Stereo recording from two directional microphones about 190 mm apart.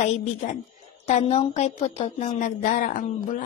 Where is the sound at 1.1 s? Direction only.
35° left (ahead or behind).